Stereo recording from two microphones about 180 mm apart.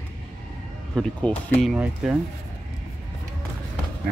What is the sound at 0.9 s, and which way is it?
Speech, centre (ahead or behind).